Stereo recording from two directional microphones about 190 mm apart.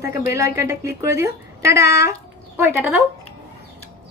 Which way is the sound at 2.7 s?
5° right (ahead or behind).